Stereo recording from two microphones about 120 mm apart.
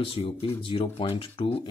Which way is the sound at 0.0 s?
50° left (ahead or behind).